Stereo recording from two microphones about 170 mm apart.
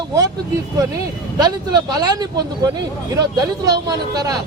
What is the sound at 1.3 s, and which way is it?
Speech, 25° right (ahead or behind).